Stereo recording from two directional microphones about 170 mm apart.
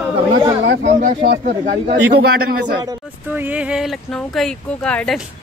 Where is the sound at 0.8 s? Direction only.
50° right (ahead or behind).